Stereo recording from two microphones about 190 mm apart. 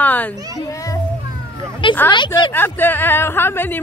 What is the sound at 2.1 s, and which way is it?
Speech, 25° left (ahead or behind).